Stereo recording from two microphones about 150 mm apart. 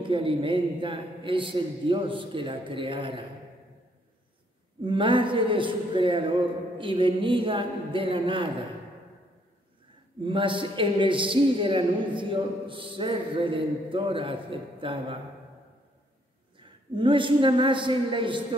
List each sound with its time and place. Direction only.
0.0 s a man's voice: 35° right (ahead or behind)
4.8 s a man's voice: 35° right (ahead or behind)
10.2 s a man's voice: 35° right (ahead or behind)
16.5 s a man's voice: 35° right (ahead or behind)